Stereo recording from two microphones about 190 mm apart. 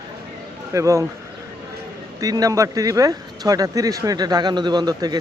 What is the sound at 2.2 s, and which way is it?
Speech, 20° right (ahead or behind).